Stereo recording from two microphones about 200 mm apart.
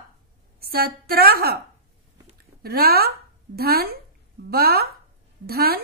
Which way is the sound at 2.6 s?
50° right (ahead or behind).